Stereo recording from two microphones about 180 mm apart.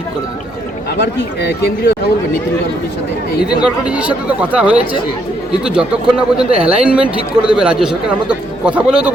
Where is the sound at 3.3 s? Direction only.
60° left (ahead or behind).